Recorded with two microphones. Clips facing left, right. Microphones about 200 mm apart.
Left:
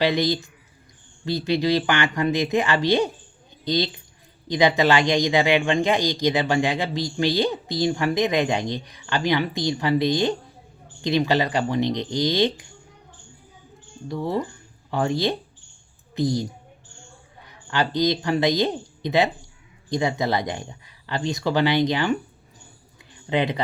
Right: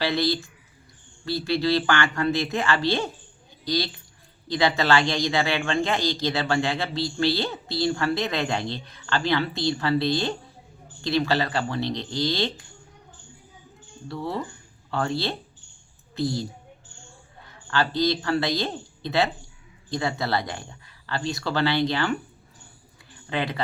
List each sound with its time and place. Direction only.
0.0 s speech: 15° left (ahead or behind)
14.1 s speech: 15° left (ahead or behind)
23.3 s speech: 20° left (ahead or behind)